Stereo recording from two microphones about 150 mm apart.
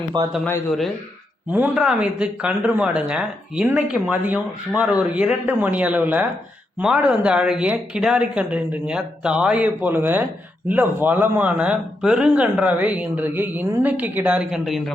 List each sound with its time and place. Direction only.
0.1 s speech: 30° right (ahead or behind)
1.5 s speech: 10° right (ahead or behind)